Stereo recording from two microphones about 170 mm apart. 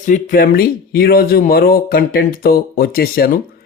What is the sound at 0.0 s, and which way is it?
Speech, 50° left (ahead or behind).